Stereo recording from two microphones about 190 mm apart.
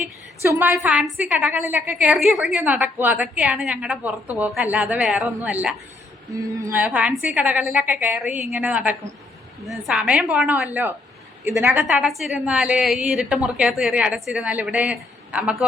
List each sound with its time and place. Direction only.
0.4 s a woman's voice: 10° right (ahead or behind)